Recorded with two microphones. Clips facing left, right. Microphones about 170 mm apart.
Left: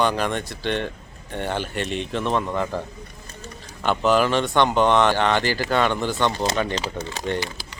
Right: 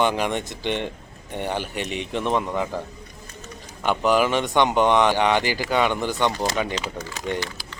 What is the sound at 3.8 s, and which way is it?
Speech, 15° right (ahead or behind).